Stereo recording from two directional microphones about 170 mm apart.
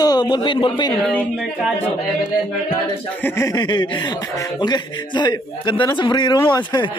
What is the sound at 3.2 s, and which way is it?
A man's voice, 20° left (ahead or behind).